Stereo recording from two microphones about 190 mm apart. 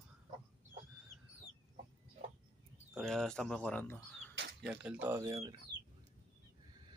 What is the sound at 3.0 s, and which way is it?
Speech, centre (ahead or behind).